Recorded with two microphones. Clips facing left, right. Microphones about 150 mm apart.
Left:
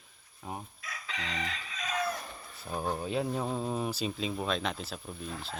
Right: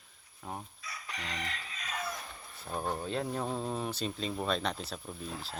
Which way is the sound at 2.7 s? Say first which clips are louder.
Left 2 dB; 5° left (ahead or behind).